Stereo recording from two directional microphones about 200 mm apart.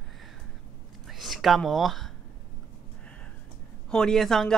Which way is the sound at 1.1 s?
Centre (ahead or behind).